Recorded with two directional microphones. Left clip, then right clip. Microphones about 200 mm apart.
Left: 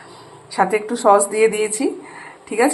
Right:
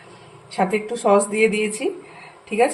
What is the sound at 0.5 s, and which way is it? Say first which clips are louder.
Speech: left 4 dB; 15° left (ahead or behind).